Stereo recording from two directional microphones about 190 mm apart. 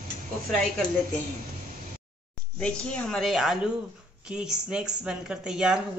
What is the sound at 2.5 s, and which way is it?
Speech, 5° left (ahead or behind).